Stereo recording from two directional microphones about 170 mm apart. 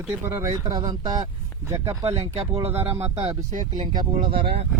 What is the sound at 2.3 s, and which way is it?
Speech, 35° right (ahead or behind).